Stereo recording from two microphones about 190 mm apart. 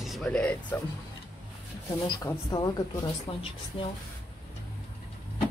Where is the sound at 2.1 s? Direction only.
20° left (ahead or behind).